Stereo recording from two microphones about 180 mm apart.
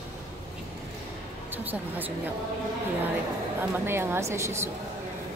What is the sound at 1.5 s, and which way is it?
Speech, 10° right (ahead or behind).